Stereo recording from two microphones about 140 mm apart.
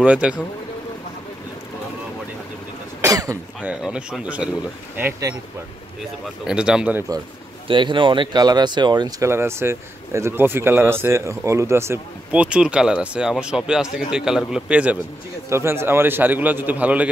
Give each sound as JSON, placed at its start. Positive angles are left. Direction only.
{"t": 0.0, "sound": "speech", "side_deg": -10}
{"t": 3.0, "sound": "speech", "side_deg": -25}
{"t": 3.6, "sound": "speech", "side_deg": -10}
{"t": 6.4, "sound": "speech", "side_deg": -5}
{"t": 7.6, "sound": "speech", "side_deg": -35}
{"t": 9.3, "sound": "speech", "side_deg": -15}